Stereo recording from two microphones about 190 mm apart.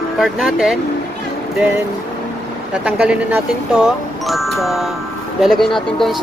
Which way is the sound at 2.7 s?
5° right (ahead or behind).